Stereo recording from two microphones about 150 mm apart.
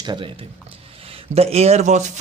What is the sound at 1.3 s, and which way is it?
Speech, 45° right (ahead or behind).